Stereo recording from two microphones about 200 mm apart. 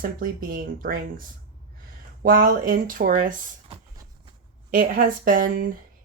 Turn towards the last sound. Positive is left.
turn(degrees=-45)  # may be behind; listen again after turning